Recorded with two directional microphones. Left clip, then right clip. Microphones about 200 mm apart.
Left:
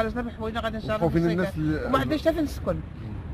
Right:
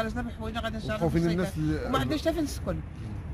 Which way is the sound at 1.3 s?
30° right (ahead or behind).